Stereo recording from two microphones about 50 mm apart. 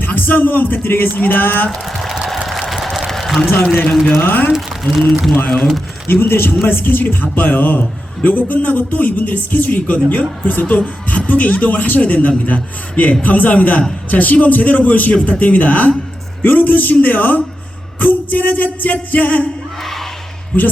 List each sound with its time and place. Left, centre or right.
0.0 s a man's voice: left
1.7 s a sound: centre
4.2 s a man's voice: left
4.5 s speech: centre
6.1 s a man's voice: left